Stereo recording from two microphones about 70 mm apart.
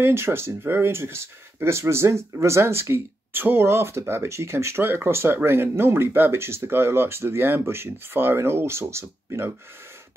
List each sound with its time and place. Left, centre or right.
0.0 s speech: right